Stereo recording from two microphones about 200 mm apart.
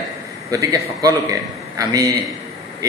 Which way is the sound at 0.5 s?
15° right (ahead or behind).